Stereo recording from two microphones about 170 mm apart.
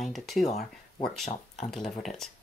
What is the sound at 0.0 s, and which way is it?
Speech, centre (ahead or behind).